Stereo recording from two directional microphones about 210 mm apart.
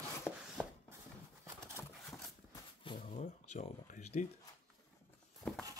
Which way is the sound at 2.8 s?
25° left (ahead or behind).